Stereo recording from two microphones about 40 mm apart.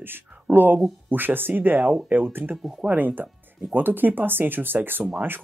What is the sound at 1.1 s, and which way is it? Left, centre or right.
Speech, right.